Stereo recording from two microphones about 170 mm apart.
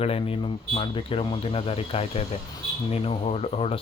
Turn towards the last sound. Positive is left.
turn(degrees=35)  # may be behind; listen again after turning